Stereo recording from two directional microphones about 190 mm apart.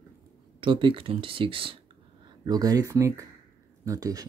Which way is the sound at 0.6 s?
25° right (ahead or behind).